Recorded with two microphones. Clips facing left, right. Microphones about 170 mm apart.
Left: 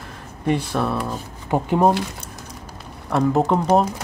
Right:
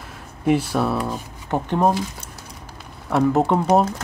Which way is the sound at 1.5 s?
10° left (ahead or behind).